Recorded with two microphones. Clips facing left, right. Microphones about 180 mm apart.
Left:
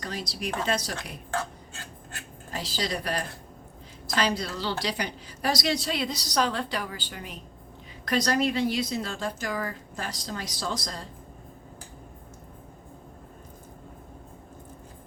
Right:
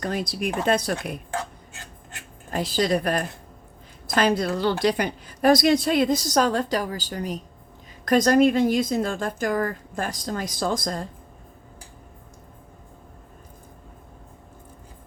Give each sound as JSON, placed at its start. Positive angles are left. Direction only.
{"t": 0.0, "sound": "a woman's voice", "side_deg": -55}
{"t": 1.3, "sound": "a sound", "side_deg": -15}
{"t": 2.5, "sound": "a woman's voice", "side_deg": -50}